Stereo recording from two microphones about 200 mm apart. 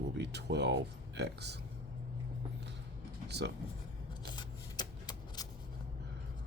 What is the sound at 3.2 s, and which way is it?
Speech, 60° right (ahead or behind).